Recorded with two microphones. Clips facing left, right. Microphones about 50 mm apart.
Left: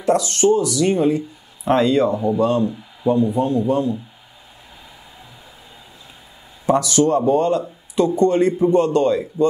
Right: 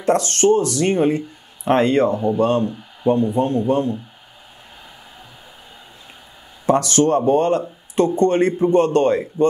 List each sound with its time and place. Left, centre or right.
0.0 s speech: right
6.6 s speech: right